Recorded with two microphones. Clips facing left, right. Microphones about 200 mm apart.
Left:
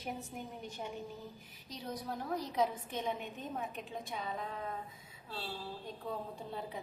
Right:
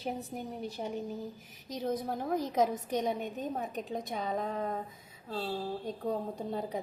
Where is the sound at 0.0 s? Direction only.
35° right (ahead or behind).